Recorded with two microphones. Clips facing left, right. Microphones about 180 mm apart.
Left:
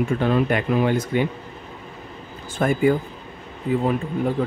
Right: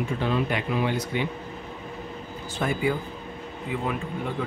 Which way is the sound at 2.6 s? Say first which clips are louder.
Left 7 dB; 50° left (ahead or behind).